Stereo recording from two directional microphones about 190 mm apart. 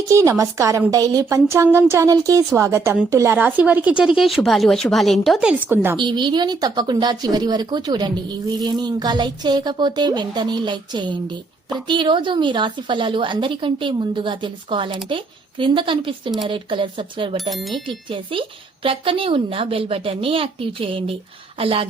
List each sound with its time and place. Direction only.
0.1 s a woman's voice: 15° right (ahead or behind)
6.0 s speech: 25° right (ahead or behind)
17.5 s speech: centre (ahead or behind)
17.8 s speech: 25° right (ahead or behind)